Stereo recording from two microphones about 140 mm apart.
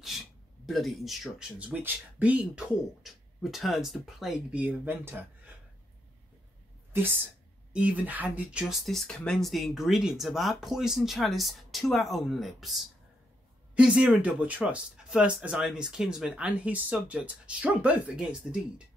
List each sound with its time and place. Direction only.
0.0 s speech: centre (ahead or behind)
6.9 s a woman's voice: 15° right (ahead or behind)